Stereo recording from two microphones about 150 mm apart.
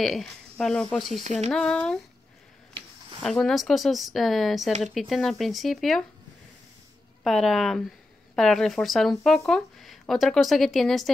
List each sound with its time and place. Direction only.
0.0 s speech: centre (ahead or behind)
3.2 s speech: centre (ahead or behind)
7.2 s speech: centre (ahead or behind)